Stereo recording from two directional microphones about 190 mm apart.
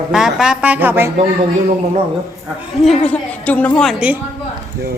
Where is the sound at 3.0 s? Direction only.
10° left (ahead or behind).